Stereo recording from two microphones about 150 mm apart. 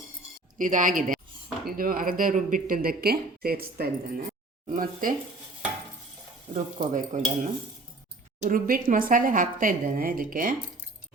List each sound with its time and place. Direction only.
0.6 s stir: 60° right (ahead or behind)
1.6 s speech: 70° right (ahead or behind); by 3.8 s 90° right
4.7 s speech: 65° right (ahead or behind)
6.5 s stir: 60° right (ahead or behind)
8.4 s speech: 65° right (ahead or behind)